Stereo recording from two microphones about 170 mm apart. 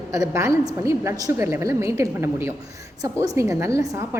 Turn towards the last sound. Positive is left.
turn(degrees=-20)  # may be behind; listen again after turning